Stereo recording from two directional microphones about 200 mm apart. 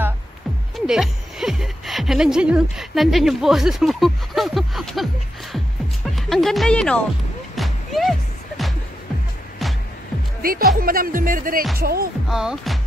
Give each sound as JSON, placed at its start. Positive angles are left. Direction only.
{"t": 0.7, "sound": "a woman's voice", "side_deg": 0}
{"t": 6.1, "sound": "a woman's voice", "side_deg": 0}
{"t": 7.5, "sound": "music", "side_deg": 0}
{"t": 10.4, "sound": "speech", "side_deg": -45}
{"t": 12.3, "sound": "a woman's voice", "side_deg": 0}